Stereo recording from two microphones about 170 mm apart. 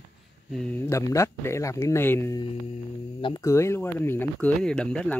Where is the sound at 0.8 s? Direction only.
15° left (ahead or behind).